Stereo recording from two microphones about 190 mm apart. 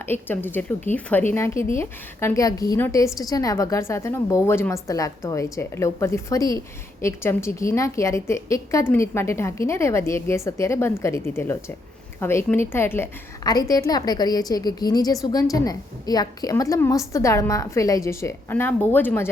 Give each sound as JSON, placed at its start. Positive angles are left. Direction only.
{"t": 0.0, "sound": "a woman's voice", "side_deg": 10}